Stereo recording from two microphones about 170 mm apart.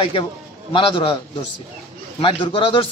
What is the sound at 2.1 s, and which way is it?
Speech, 30° left (ahead or behind).